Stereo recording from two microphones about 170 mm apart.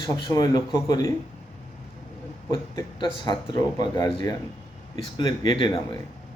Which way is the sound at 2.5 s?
25° left (ahead or behind).